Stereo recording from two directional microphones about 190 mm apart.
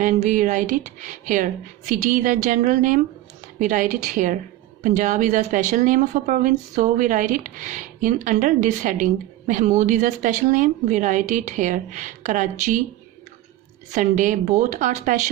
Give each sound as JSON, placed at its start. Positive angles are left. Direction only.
{"t": 0.0, "sound": "a woman's voice", "side_deg": -40}
{"t": 13.9, "sound": "a woman's voice", "side_deg": -40}